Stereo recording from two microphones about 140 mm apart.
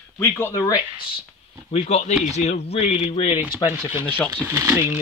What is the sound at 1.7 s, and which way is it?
Speech, 50° left (ahead or behind).